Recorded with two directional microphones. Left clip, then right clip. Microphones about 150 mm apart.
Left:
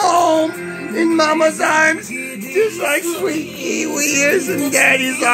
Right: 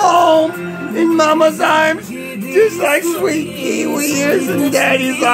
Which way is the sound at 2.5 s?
15° right (ahead or behind).